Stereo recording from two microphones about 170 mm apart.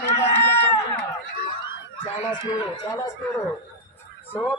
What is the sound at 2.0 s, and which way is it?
Speech, 30° left (ahead or behind).